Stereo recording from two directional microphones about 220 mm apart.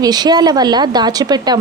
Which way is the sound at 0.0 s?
20° right (ahead or behind).